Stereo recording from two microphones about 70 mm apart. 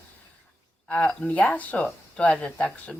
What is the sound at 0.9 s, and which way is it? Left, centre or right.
Speech, centre.